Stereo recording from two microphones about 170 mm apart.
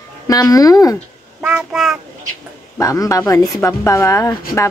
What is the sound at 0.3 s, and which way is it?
Speech, 20° left (ahead or behind).